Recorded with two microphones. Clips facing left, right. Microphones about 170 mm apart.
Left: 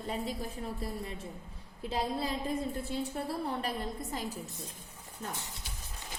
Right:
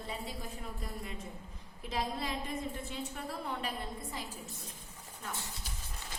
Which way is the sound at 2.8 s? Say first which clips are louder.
Left 6 dB; 35° left (ahead or behind).